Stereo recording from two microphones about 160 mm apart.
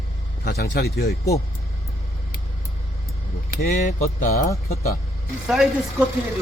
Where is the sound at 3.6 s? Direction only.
55° left (ahead or behind).